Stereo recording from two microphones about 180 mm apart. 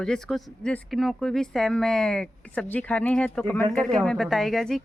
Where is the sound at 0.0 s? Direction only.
5° left (ahead or behind).